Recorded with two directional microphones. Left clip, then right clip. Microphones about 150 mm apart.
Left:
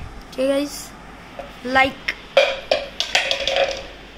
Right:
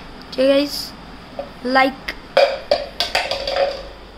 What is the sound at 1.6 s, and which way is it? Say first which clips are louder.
Speech: right 1 dB; 25° right (ahead or behind).